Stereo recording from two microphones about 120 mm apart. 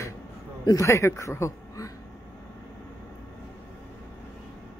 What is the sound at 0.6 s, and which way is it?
Speech, 25° left (ahead or behind).